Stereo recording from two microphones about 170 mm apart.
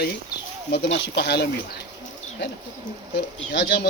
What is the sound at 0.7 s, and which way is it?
Speech, 85° left.